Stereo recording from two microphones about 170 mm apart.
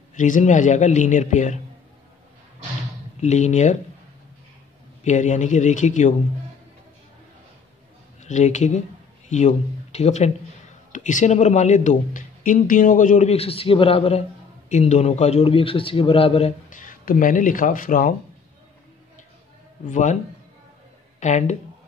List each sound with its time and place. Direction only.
0.1 s speech: 45° left (ahead or behind)
3.2 s speech: 40° left (ahead or behind)
5.0 s speech: 45° left (ahead or behind)
8.2 s a man's voice: 45° left (ahead or behind)
19.9 s speech: 45° left (ahead or behind)
21.2 s speech: 45° left (ahead or behind)